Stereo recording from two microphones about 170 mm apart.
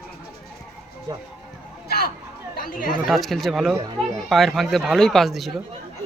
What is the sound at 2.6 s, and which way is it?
Speech, 55° left (ahead or behind).